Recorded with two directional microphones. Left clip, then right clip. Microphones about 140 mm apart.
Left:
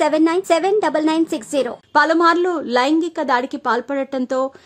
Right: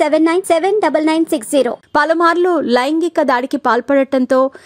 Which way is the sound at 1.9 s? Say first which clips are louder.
Even; 45° right (ahead or behind).